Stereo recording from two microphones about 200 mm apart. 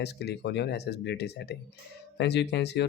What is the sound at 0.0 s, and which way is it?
Speech, 55° left (ahead or behind).